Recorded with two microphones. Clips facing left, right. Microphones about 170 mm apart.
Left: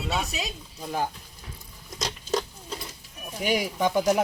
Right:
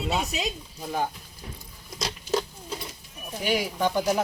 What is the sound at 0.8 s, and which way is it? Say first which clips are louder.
Speech: even; centre (ahead or behind).